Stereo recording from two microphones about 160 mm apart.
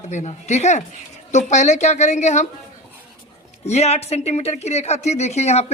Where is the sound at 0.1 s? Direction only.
45° left (ahead or behind).